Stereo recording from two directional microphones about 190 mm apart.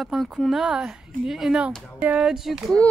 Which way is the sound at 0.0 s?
Centre (ahead or behind).